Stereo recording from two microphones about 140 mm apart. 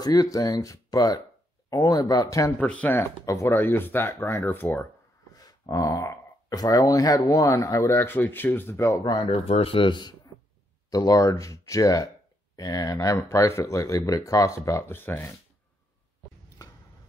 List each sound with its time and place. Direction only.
0.0 s speech: 25° left (ahead or behind)
2.6 s speech: 10° left (ahead or behind)
5.3 s speech: 25° left (ahead or behind)
9.0 s speech: 35° left (ahead or behind); by 15.3 s 15° left (ahead or behind)